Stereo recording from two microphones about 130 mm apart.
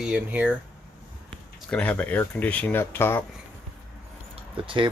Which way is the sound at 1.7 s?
10° left (ahead or behind).